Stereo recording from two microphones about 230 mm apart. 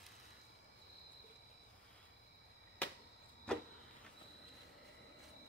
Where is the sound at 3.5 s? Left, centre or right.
Centre.